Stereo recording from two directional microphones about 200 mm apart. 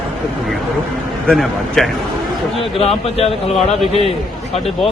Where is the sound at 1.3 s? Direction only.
Centre (ahead or behind).